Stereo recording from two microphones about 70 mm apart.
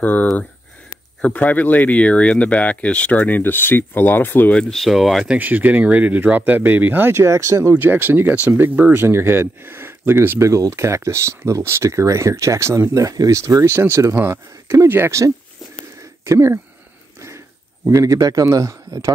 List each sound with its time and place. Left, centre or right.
0.0 s a sound: left
1.2 s speech: left
4.6 s speech: centre
5.4 s speech: right
7.7 s speech: right
10.5 s speech: right
13.7 s speech: right
16.0 s a sound: right
17.8 s speech: right